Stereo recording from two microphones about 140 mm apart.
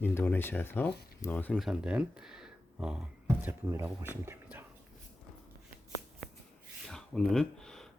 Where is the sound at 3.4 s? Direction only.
15° right (ahead or behind).